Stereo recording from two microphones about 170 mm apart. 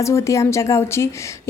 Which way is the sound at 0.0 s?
15° left (ahead or behind).